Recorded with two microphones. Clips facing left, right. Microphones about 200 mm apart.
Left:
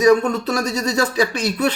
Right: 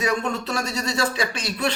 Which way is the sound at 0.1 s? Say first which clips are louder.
Left 9 dB; 40° left (ahead or behind).